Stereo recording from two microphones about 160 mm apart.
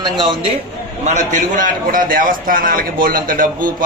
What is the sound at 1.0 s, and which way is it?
A man's voice, 45° right (ahead or behind).